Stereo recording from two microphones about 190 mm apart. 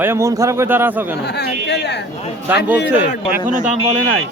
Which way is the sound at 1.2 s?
60° left (ahead or behind).